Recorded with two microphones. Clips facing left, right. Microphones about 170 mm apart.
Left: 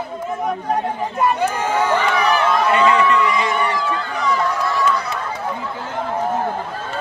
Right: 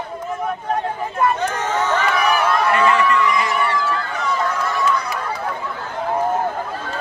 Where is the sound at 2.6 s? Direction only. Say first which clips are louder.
Left 2 dB; 20° left (ahead or behind).